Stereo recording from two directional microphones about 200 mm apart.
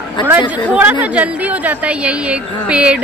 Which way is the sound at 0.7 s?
10° right (ahead or behind).